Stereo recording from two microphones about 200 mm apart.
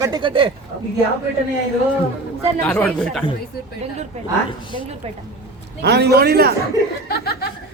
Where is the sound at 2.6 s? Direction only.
5° left (ahead or behind).